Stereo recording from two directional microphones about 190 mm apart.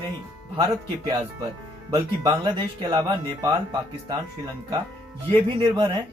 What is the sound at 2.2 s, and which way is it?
Speech, 25° right (ahead or behind).